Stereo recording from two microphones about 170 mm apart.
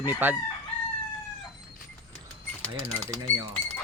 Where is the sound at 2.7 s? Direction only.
15° right (ahead or behind).